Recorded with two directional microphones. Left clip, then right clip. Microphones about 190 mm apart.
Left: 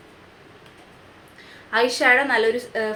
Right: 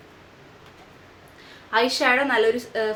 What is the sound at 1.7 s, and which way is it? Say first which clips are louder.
A woman's voice: left 2 dB; 5° right (ahead or behind).